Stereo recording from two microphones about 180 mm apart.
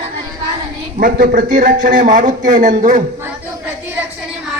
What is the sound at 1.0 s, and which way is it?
Speech, 55° right (ahead or behind).